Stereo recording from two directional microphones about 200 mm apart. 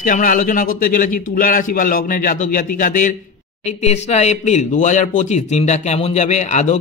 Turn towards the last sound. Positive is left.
turn(degrees=35)  # may be behind; listen again after turning